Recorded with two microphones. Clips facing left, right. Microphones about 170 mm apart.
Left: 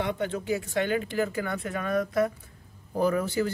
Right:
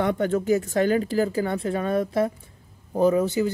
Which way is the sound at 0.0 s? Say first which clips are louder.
Right 7 dB; 45° right (ahead or behind).